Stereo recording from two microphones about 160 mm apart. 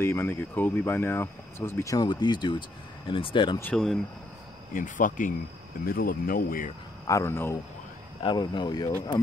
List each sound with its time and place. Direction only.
0.0 s speech: 15° left (ahead or behind); by 3.5 s 30° left (ahead or behind)
3.7 s speech: centre (ahead or behind)
4.7 s speech: 55° left (ahead or behind)
7.1 s speech: 20° left (ahead or behind)
8.2 s speech: 30° left (ahead or behind)